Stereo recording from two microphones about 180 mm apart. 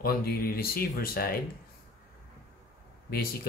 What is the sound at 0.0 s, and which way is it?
Speech, 55° left (ahead or behind).